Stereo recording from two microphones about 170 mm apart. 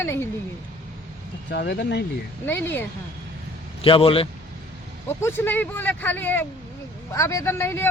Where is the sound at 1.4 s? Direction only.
90° left.